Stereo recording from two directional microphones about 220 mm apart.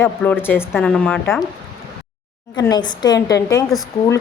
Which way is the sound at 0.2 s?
5° left (ahead or behind).